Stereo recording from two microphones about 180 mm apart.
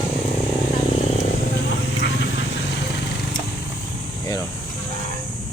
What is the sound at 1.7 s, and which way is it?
Vehicle, 75° left (ahead or behind).